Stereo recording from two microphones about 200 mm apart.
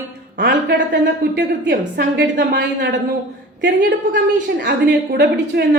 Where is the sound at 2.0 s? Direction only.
50° right (ahead or behind).